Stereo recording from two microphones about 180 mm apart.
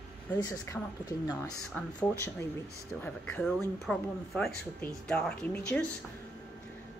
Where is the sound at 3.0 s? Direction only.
10° left (ahead or behind).